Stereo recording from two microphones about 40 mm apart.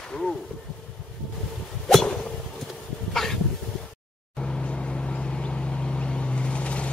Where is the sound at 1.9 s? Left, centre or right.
Centre.